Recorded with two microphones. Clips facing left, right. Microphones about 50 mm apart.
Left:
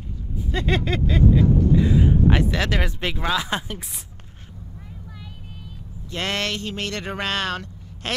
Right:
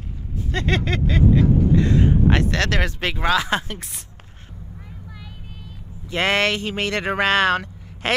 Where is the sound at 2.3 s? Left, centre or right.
Right.